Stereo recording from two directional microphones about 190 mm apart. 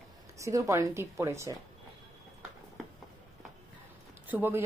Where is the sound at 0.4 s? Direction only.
15° right (ahead or behind).